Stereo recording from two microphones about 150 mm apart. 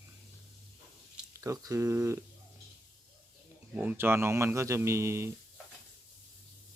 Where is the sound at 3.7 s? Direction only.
10° right (ahead or behind).